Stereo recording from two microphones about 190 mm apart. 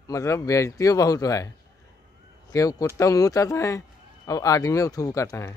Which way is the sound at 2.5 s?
15° left (ahead or behind).